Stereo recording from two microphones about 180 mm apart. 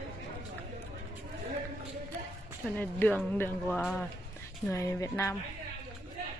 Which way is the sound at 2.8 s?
10° left (ahead or behind).